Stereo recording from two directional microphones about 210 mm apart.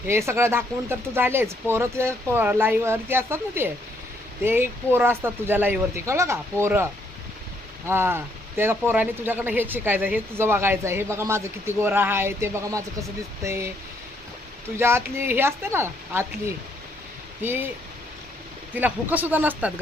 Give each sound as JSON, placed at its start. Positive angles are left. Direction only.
{"t": 0.1, "sound": "speech", "side_deg": -15}
{"t": 14.8, "sound": "speech", "side_deg": -10}
{"t": 17.4, "sound": "speech", "side_deg": -10}
{"t": 18.7, "sound": "speech", "side_deg": -10}